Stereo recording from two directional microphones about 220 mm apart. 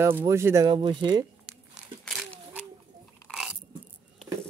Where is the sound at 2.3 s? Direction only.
10° right (ahead or behind).